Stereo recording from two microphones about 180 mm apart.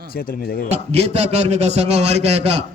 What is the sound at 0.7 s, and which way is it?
A man's voice, 35° right (ahead or behind).